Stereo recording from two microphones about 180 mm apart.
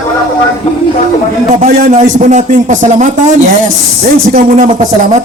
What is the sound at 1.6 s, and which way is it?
A man's voice, 40° right (ahead or behind).